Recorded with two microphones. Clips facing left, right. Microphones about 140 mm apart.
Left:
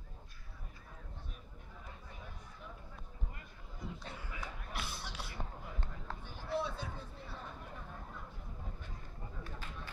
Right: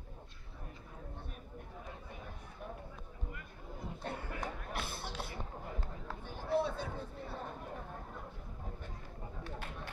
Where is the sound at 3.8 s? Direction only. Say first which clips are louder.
Right 4 dB; 55° right (ahead or behind).